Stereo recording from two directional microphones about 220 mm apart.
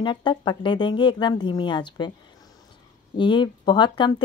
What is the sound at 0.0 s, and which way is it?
Speech, 20° left (ahead or behind).